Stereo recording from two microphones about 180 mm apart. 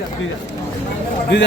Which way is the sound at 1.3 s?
75° left (ahead or behind).